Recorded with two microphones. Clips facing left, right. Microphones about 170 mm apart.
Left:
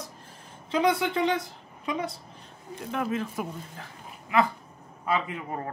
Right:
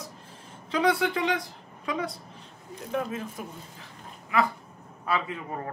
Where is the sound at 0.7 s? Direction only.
25° left (ahead or behind).